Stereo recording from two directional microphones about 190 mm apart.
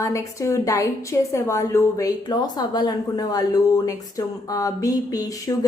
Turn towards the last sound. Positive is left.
turn(degrees=20)  # may be behind; listen again after turning